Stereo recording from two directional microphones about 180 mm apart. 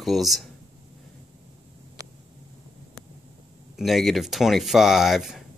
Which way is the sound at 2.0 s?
20° right (ahead or behind).